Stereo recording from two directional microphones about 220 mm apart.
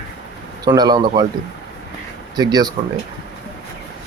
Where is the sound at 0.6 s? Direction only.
20° right (ahead or behind).